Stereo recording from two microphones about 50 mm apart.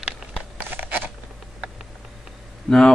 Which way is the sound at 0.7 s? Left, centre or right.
Right.